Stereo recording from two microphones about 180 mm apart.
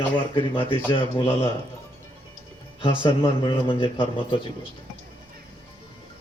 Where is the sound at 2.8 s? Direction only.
30° left (ahead or behind).